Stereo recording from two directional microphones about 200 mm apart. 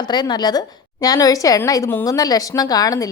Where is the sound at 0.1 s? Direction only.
20° left (ahead or behind).